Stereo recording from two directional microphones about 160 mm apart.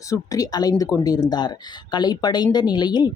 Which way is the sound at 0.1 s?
20° left (ahead or behind).